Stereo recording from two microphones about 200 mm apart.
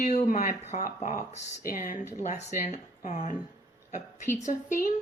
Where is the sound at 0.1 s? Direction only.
40° left (ahead or behind).